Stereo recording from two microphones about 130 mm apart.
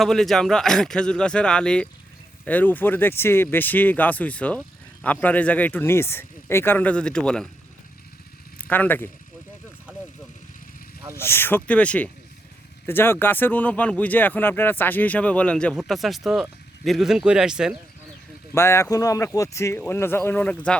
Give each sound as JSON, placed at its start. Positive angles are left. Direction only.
{"t": 0.0, "sound": "speech", "side_deg": 0}
{"t": 8.5, "sound": "speech", "side_deg": 10}
{"t": 11.1, "sound": "speech", "side_deg": 20}
{"t": 18.5, "sound": "speech", "side_deg": 20}